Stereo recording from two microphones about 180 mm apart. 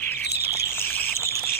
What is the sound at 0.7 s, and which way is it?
Bird, 10° left (ahead or behind).